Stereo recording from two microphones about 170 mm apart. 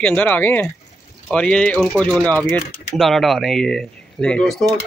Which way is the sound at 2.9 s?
Centre (ahead or behind).